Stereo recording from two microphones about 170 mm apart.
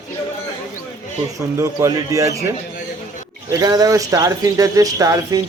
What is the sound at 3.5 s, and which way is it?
A man's voice, 20° right (ahead or behind).